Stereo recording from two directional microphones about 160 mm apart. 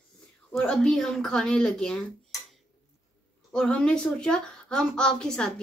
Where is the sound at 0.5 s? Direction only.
5° left (ahead or behind).